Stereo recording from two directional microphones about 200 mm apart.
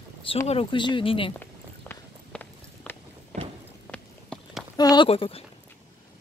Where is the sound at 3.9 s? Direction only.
5° left (ahead or behind).